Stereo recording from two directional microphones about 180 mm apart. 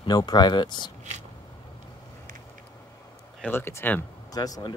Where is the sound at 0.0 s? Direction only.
25° left (ahead or behind).